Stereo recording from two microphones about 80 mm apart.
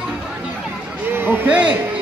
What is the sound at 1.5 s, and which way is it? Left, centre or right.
Speech, centre.